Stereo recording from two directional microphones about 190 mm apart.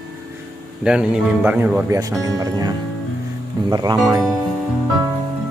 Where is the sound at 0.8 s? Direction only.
5° right (ahead or behind); by 4.0 s 20° right (ahead or behind).